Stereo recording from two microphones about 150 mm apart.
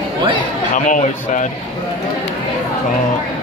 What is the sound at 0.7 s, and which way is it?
Speech, 60° left (ahead or behind).